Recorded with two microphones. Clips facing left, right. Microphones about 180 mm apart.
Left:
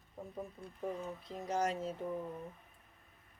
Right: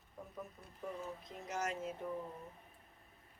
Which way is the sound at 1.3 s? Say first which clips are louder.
Left 6 dB; 30° left (ahead or behind).